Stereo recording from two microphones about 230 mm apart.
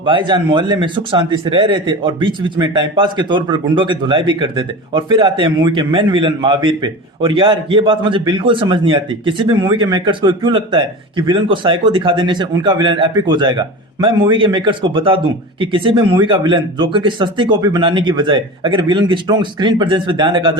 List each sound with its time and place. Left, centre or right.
0.0 s a man's voice: right